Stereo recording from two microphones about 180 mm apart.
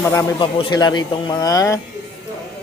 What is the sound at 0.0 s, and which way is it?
Speech, 15° left (ahead or behind).